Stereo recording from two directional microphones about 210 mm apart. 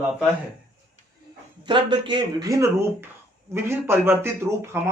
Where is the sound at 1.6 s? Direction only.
20° right (ahead or behind).